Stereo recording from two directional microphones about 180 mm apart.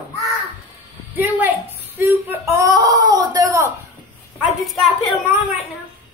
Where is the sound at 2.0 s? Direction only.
15° right (ahead or behind).